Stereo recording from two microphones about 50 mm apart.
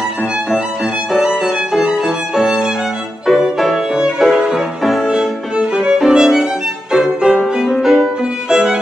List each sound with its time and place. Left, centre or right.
1.4 s music: centre
4.2 s violin: centre
6.9 s music: centre
7.6 s violin: centre